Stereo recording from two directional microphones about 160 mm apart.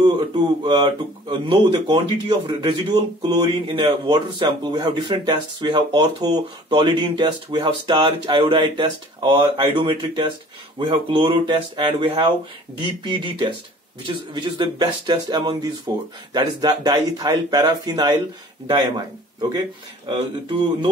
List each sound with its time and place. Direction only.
0.7 s speech: 25° right (ahead or behind)
20.1 s speech: 30° right (ahead or behind)